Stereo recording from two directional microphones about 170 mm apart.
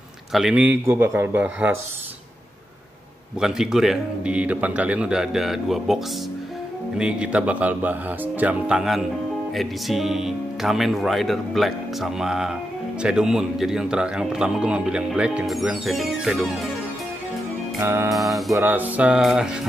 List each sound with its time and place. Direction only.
0.3 s speech: 5° right (ahead or behind)
3.3 s a man's voice: 5° right (ahead or behind)
7.0 s a man's voice: 5° right (ahead or behind)
17.7 s speech: 15° right (ahead or behind)
18.1 s a man's voice: centre (ahead or behind)
18.5 s speech: 10° right (ahead or behind)